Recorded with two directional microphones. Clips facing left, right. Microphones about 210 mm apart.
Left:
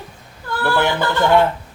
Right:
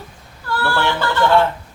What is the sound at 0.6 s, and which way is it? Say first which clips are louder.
Speech: left 2 dB; 20° left (ahead or behind).